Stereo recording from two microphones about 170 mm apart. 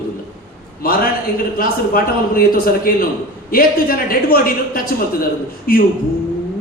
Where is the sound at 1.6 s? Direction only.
60° left (ahead or behind).